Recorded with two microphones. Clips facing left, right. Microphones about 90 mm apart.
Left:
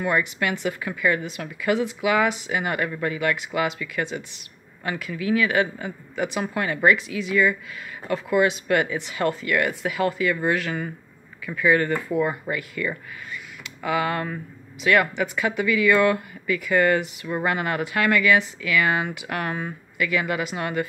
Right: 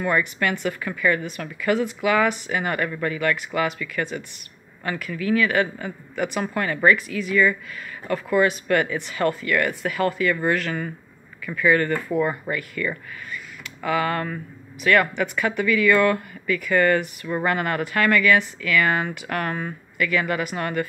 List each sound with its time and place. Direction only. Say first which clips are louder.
0.0 s a man's voice: right 1 dB; 15° left (ahead or behind)